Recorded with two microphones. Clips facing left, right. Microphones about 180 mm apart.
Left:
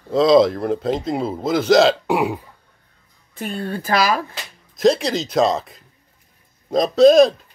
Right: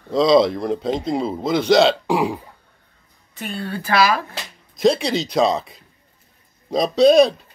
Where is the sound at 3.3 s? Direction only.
35° left (ahead or behind).